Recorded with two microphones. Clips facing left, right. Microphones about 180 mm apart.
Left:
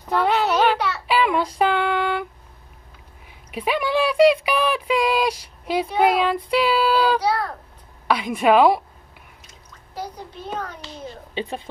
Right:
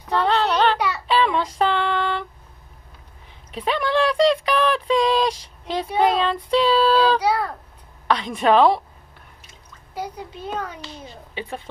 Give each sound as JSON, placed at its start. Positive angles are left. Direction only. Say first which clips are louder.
{"t": 0.1, "sound": "child singing", "louder": "even", "side_deg": 10}
{"t": 3.5, "sound": "speech", "louder": "even", "side_deg": 10}
{"t": 11.3, "sound": "a woman's voice", "louder": "left 3 dB", "side_deg": 20}